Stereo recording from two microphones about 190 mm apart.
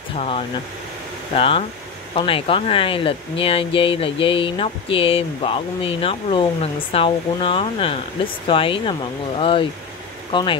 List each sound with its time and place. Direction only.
1.3 s speech: 30° left (ahead or behind)